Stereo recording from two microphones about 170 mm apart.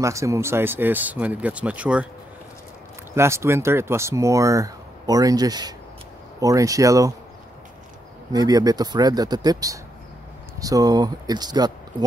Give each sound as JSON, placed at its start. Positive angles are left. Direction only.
{"t": 0.0, "sound": "speech", "side_deg": -20}
{"t": 3.2, "sound": "speech", "side_deg": -15}
{"t": 8.3, "sound": "speech", "side_deg": -20}